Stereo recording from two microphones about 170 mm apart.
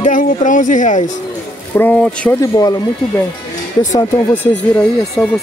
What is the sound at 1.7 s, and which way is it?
Speech, 10° left (ahead or behind).